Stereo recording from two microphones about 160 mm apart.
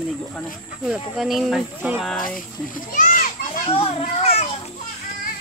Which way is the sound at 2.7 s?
55° left (ahead or behind).